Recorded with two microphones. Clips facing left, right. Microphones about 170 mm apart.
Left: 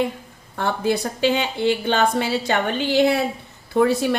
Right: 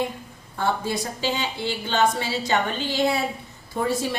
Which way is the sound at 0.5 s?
65° left (ahead or behind).